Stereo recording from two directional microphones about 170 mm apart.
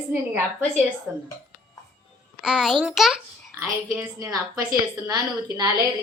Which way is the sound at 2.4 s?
Centre (ahead or behind).